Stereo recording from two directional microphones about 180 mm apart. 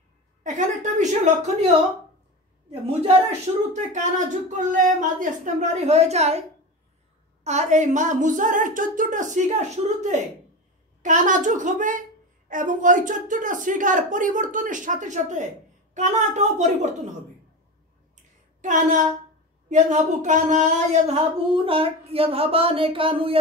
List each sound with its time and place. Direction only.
0.4 s speech: 45° right (ahead or behind)
2.7 s speech: 35° right (ahead or behind)
7.4 s speech: 40° right (ahead or behind)
18.1 s a sound: 45° right (ahead or behind)
19.7 s speech: 45° right (ahead or behind)